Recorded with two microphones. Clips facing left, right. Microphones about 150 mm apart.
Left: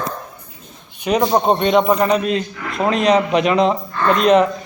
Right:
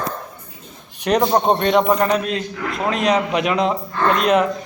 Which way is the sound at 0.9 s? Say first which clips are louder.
Left 1 dB; centre (ahead or behind).